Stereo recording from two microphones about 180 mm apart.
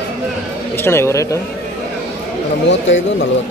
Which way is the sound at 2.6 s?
90° left.